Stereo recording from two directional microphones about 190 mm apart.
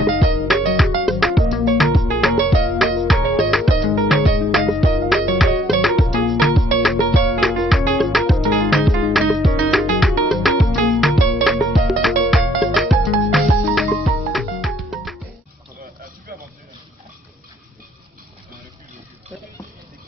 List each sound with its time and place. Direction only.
0.5 s music: centre (ahead or behind)
16.3 s music: 50° right (ahead or behind)